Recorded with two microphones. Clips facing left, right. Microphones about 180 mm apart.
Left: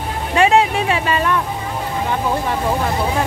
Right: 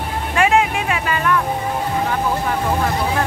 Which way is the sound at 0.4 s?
30° left (ahead or behind).